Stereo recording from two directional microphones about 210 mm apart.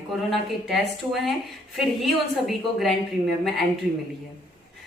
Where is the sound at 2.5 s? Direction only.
Centre (ahead or behind).